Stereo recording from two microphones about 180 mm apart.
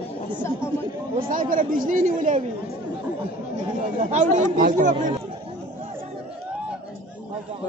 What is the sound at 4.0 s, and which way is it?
Speech, 40° right (ahead or behind).